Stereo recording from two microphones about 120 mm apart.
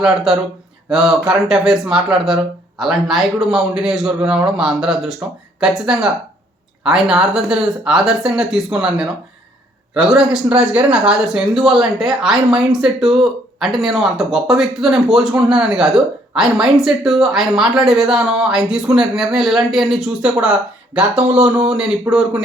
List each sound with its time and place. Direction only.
0.0 s speech: 5° right (ahead or behind)